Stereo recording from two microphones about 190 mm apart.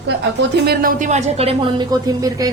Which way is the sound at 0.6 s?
45° right (ahead or behind).